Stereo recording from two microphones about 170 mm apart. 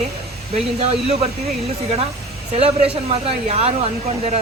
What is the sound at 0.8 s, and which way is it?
Speech, 40° right (ahead or behind).